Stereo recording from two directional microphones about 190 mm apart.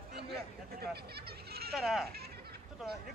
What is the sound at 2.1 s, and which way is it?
Goat, 55° right (ahead or behind).